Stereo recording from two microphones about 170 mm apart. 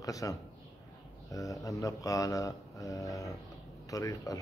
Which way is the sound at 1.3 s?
20° left (ahead or behind).